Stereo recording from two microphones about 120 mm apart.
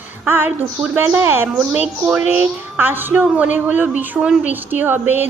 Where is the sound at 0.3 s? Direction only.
15° right (ahead or behind).